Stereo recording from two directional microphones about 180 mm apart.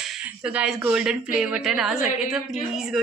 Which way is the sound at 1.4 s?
5° right (ahead or behind).